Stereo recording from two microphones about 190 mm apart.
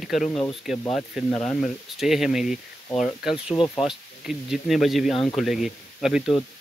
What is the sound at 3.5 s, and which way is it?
Speech, 30° left (ahead or behind).